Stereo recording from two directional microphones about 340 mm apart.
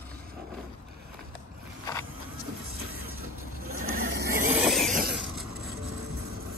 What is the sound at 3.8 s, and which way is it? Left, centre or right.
Vehicle, right.